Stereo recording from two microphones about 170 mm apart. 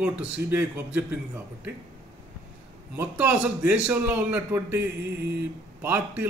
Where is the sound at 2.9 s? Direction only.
10° right (ahead or behind).